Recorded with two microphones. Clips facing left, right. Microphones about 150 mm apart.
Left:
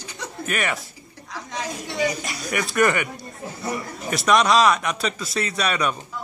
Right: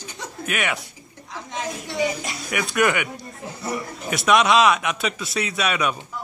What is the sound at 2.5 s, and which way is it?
A man's voice, centre (ahead or behind).